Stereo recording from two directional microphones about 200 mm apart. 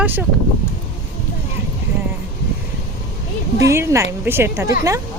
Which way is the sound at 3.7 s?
15° right (ahead or behind).